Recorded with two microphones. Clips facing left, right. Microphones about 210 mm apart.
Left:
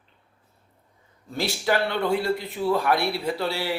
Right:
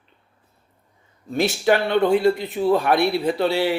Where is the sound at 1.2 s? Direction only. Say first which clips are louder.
Right 7 dB; 20° right (ahead or behind).